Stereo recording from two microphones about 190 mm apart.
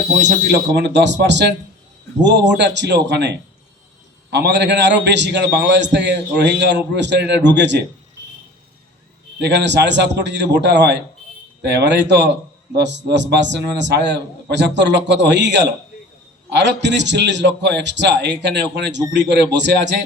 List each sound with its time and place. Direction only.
0.4 s a man's voice: 65° right (ahead or behind)
9.4 s a man's voice: 65° right (ahead or behind)